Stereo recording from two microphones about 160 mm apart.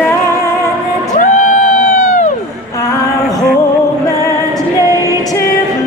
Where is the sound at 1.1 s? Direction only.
50° left (ahead or behind).